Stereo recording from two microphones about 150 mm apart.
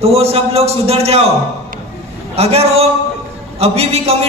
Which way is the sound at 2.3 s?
45° right (ahead or behind).